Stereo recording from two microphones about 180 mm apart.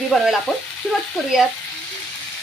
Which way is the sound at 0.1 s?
Centre (ahead or behind).